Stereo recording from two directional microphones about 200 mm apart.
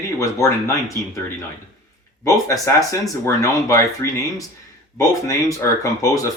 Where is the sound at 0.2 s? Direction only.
15° left (ahead or behind).